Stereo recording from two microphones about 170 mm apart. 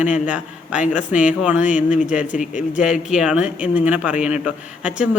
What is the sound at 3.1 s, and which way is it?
A man's voice, 5° right (ahead or behind).